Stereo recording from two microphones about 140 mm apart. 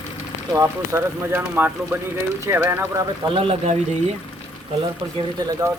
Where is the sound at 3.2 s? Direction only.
40° right (ahead or behind).